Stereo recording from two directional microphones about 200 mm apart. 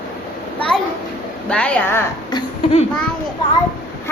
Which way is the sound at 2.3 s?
20° left (ahead or behind).